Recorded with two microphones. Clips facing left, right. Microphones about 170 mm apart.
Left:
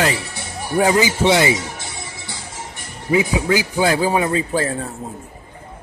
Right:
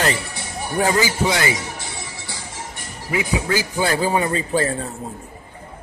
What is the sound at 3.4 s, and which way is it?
A man's voice, 15° left (ahead or behind).